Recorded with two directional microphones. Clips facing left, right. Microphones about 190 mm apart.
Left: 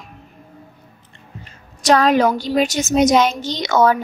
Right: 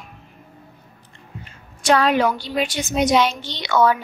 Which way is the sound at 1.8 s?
40° left (ahead or behind).